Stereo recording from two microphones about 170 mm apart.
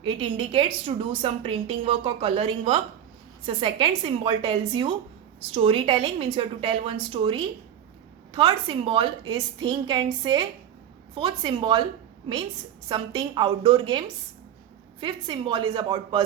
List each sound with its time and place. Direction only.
0.0 s a woman's voice: 30° right (ahead or behind)
12.9 s a woman's voice: 25° right (ahead or behind)
15.0 s a woman's voice: 25° right (ahead or behind)